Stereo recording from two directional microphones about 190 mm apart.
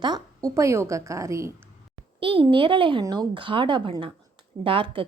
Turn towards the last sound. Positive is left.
turn(degrees=-25)  # may be behind; listen again after turning